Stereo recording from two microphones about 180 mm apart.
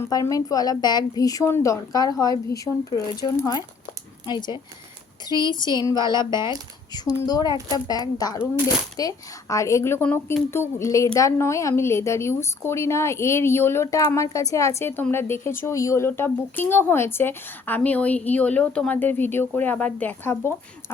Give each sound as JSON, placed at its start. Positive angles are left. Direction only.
{"t": 0.0, "sound": "a woman's voice", "side_deg": 20}